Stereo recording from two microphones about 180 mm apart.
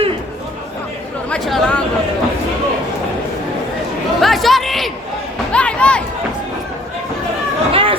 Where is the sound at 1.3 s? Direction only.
5° left (ahead or behind).